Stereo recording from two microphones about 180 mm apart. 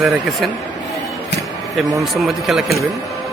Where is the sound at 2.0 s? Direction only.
Centre (ahead or behind).